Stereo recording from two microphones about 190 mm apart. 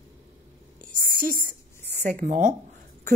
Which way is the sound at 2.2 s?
40° right (ahead or behind).